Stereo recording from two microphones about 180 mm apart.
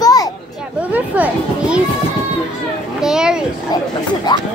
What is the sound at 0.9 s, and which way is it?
Speech, 10° right (ahead or behind).